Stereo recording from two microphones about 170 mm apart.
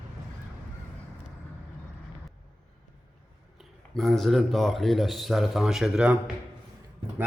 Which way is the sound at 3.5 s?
Centre (ahead or behind).